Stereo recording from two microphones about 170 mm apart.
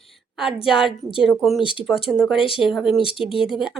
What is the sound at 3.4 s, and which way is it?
Speech, centre (ahead or behind).